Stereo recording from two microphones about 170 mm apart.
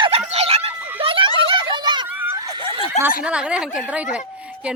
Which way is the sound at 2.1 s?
10° right (ahead or behind).